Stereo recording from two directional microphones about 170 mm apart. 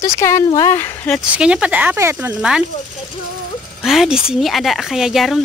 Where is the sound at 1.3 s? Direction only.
5° right (ahead or behind).